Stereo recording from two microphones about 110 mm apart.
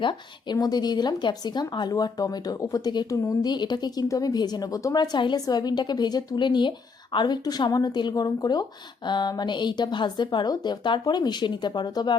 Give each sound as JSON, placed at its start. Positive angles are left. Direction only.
{"t": 0.0, "sound": "speech", "side_deg": 45}
{"t": 5.1, "sound": "speech", "side_deg": 45}